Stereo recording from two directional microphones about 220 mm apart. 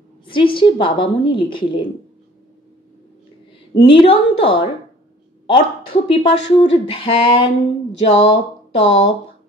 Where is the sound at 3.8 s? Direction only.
25° left (ahead or behind).